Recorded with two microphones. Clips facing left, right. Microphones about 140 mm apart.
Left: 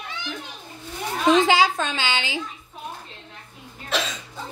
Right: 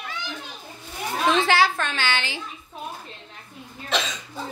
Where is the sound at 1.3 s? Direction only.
15° left (ahead or behind).